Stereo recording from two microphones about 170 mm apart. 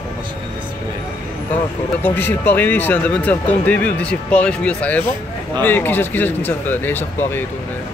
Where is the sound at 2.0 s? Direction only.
10° left (ahead or behind).